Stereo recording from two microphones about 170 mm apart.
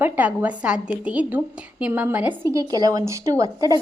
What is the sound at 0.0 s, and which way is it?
A woman's voice, 10° right (ahead or behind).